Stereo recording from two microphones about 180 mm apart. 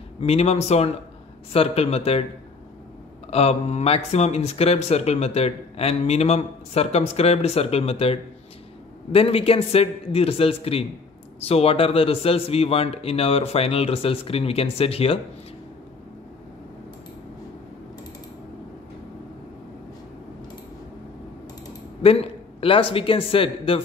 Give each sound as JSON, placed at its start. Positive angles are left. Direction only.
{"t": 0.2, "sound": "speech", "side_deg": 35}
{"t": 3.3, "sound": "speech", "side_deg": 35}
{"t": 22.0, "sound": "speech", "side_deg": 30}